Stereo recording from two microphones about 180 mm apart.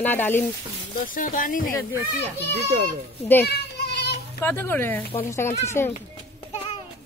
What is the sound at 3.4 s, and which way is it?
Sheep, 65° left (ahead or behind).